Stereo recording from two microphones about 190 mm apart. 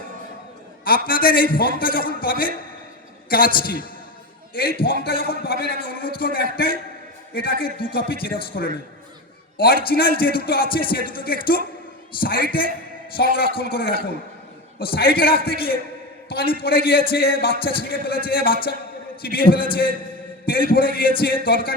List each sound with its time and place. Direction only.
0.9 s a man's voice: 50° left (ahead or behind)